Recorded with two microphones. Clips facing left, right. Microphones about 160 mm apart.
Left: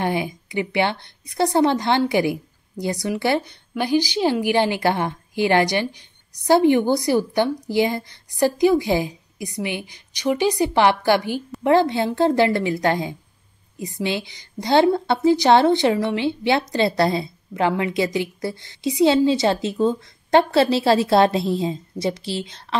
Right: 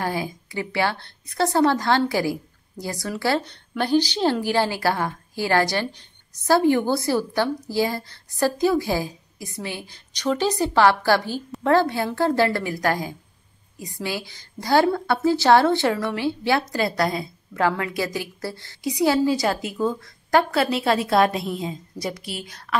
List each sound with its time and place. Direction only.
0.0 s a woman's voice: 20° left (ahead or behind)